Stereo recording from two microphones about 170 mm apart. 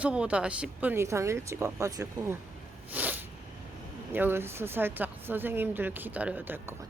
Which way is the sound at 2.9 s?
10° right (ahead or behind).